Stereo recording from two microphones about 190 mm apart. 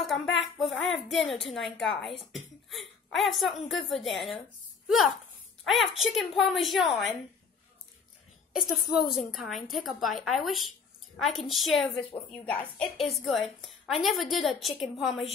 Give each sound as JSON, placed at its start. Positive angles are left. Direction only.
{"t": 0.0, "sound": "a sound", "side_deg": 0}
{"t": 1.3, "sound": "a woman's voice", "side_deg": 0}
{"t": 8.5, "sound": "a woman's voice", "side_deg": 0}
{"t": 12.8, "sound": "a woman's voice", "side_deg": 30}
{"t": 13.1, "sound": "a woman's voice", "side_deg": 0}